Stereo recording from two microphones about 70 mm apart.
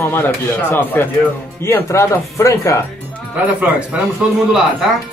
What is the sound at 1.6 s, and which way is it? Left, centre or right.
Speech, left.